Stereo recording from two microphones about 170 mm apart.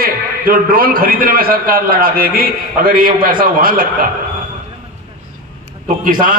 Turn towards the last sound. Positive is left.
turn(degrees=-50)  # may be behind; listen again after turning